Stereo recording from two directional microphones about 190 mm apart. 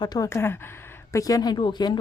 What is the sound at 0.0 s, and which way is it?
A woman's voice, 20° left (ahead or behind).